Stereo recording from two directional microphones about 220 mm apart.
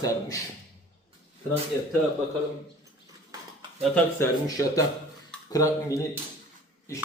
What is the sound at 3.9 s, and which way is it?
A man's voice, 15° left (ahead or behind).